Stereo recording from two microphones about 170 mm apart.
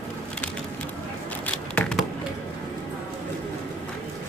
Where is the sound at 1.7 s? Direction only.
5° left (ahead or behind).